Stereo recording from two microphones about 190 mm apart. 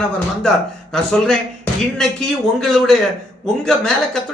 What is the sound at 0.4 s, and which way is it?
A man's voice, 5° left (ahead or behind).